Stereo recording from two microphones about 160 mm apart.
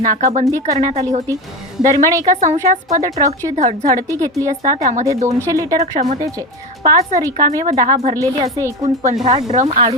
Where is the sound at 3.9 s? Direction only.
20° right (ahead or behind).